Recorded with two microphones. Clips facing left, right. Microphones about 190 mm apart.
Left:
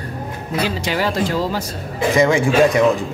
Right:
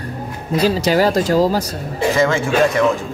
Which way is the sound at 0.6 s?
40° right (ahead or behind).